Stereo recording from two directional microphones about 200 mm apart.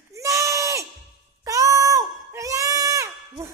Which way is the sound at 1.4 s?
15° right (ahead or behind).